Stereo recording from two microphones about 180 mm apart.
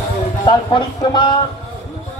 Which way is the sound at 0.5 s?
25° left (ahead or behind).